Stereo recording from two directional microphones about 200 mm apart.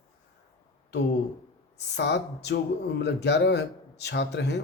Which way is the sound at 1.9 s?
60° left (ahead or behind).